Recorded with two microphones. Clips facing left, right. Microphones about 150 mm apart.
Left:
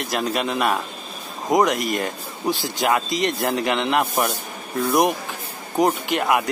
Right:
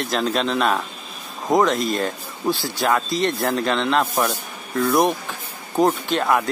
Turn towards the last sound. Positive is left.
turn(degrees=15)  # may be behind; listen again after turning